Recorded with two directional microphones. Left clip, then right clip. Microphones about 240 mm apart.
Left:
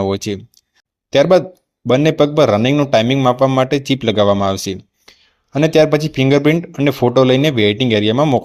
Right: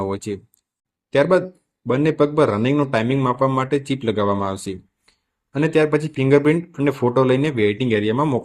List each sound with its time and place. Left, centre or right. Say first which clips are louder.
0.0 s a man's voice: left 6 dB; left